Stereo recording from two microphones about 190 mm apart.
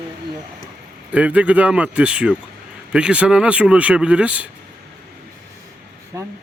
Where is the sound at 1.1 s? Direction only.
5° right (ahead or behind).